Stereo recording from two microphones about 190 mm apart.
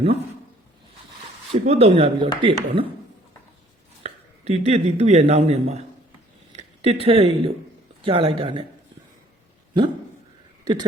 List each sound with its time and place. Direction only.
1.5 s speech: 35° right (ahead or behind)
4.0 s speech: 35° right (ahead or behind)
10.6 s a sound: 20° right (ahead or behind)